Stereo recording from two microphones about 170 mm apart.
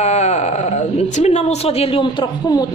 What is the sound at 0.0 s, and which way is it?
Speech, 40° left (ahead or behind).